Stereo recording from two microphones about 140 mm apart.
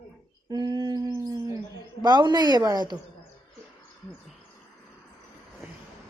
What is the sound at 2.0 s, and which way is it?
Speech, 30° right (ahead or behind).